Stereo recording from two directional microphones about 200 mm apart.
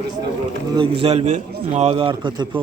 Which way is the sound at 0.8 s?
30° right (ahead or behind).